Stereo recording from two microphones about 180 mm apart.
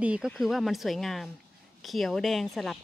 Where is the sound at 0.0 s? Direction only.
5° right (ahead or behind).